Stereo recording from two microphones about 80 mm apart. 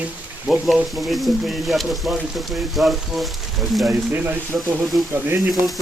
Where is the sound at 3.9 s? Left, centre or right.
Right.